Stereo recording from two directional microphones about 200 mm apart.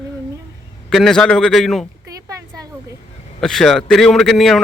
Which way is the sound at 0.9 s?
Centre (ahead or behind).